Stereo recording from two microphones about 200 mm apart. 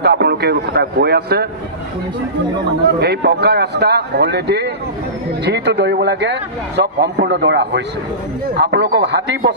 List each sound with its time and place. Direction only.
0.0 s a man's voice: 55° right (ahead or behind)
3.0 s a man's voice: 55° right (ahead or behind)